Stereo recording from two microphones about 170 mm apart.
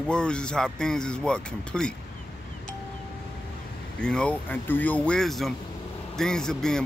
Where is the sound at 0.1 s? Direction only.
5° left (ahead or behind).